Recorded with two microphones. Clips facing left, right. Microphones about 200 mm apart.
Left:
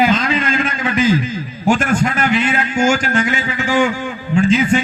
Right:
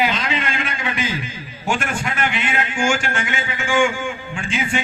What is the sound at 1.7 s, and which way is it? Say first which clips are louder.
A man's voice: left 8 dB; 40° left (ahead or behind).